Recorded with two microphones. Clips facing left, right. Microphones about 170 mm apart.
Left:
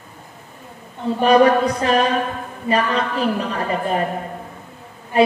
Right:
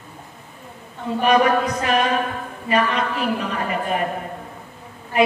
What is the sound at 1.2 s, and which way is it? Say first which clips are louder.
A woman's voice: left 4 dB; 35° left (ahead or behind).